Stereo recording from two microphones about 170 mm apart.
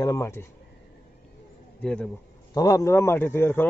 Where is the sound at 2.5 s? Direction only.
20° left (ahead or behind).